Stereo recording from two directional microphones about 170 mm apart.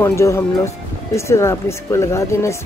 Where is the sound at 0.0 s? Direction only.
15° left (ahead or behind).